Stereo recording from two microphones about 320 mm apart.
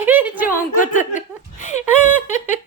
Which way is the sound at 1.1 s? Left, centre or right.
Left.